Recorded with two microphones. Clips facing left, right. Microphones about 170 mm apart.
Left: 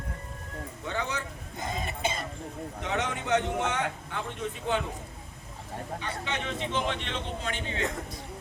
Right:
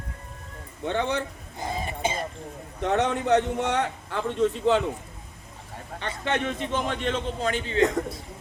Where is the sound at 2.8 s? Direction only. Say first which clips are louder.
Right 8 dB; 65° right (ahead or behind).